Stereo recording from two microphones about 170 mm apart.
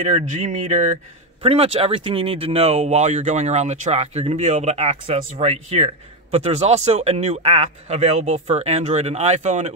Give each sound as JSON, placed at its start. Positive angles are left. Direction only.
{"t": 0.1, "sound": "speech", "side_deg": -40}